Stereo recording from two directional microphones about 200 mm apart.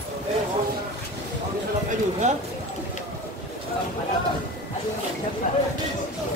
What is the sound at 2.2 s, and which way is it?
Speech, 35° right (ahead or behind).